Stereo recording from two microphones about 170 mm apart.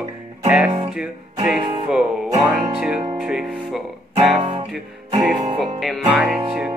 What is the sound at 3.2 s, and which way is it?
Speech, 5° right (ahead or behind).